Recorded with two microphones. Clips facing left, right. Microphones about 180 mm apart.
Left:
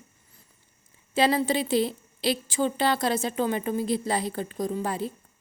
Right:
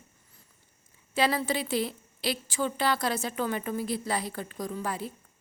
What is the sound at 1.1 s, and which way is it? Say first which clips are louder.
A woman's voice: left 4 dB; 25° left (ahead or behind).